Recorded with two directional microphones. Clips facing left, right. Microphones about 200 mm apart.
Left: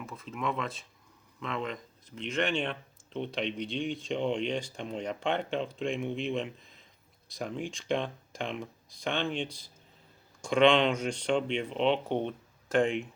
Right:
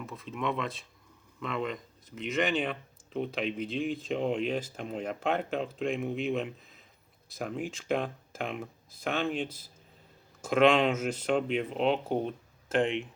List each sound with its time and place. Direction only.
0.0 s speech: centre (ahead or behind)
11.7 s speech: 40° right (ahead or behind)
12.8 s speech: centre (ahead or behind)